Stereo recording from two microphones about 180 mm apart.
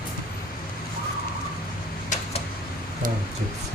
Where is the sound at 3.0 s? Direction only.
50° right (ahead or behind).